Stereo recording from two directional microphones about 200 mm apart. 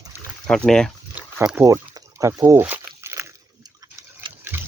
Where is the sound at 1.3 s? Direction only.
10° right (ahead or behind).